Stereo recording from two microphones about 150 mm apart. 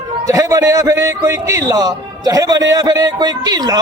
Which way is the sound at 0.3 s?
20° right (ahead or behind).